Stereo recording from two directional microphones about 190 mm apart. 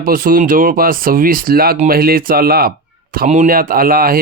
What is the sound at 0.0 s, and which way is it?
Speech, 45° right (ahead or behind).